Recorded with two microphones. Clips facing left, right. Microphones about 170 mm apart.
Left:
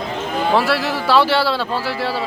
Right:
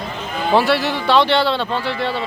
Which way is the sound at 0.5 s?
Centre (ahead or behind).